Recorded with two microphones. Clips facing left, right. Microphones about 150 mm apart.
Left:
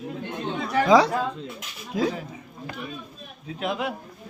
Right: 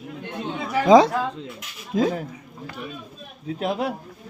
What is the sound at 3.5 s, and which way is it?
Speech, 40° right (ahead or behind).